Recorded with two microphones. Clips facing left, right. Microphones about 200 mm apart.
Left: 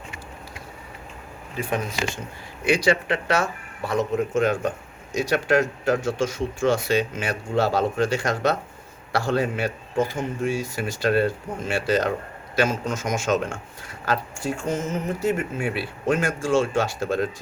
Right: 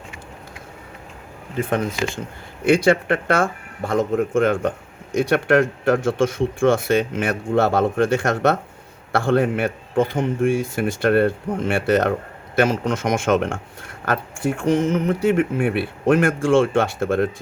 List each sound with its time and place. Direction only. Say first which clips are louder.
1.5 s speech: right 5 dB; 55° right (ahead or behind)